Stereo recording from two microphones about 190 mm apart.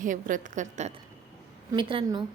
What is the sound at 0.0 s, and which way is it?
Speech, 45° right (ahead or behind).